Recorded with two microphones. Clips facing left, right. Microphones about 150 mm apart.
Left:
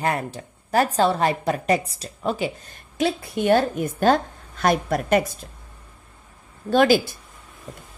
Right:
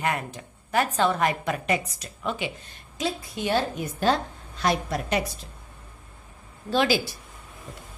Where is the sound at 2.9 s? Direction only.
60° left (ahead or behind).